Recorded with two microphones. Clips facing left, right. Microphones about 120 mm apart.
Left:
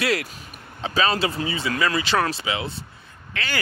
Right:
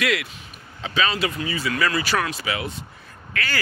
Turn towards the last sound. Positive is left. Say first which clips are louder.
# right 2 dB
turn(degrees=20)  # may be behind; listen again after turning